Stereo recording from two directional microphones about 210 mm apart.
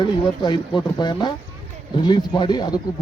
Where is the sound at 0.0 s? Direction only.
20° left (ahead or behind).